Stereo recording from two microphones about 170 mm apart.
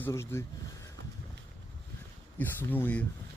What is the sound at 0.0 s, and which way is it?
Speech, 15° left (ahead or behind).